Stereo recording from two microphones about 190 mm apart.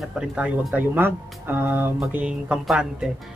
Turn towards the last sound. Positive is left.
turn(degrees=0)  # may be behind; listen again after turning